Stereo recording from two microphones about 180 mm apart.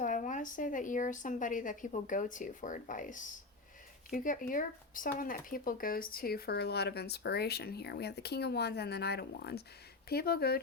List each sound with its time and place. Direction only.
0.0 s speech: 45° left (ahead or behind)